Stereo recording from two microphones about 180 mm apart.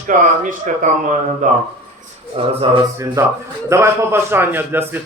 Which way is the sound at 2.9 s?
15° right (ahead or behind).